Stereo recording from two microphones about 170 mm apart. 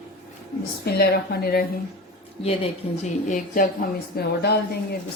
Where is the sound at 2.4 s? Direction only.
35° left (ahead or behind).